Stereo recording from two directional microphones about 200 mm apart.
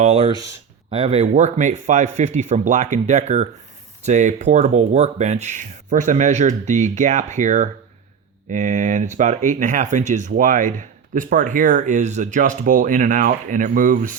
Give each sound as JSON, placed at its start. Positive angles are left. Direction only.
{"t": 0.0, "sound": "speech", "side_deg": -30}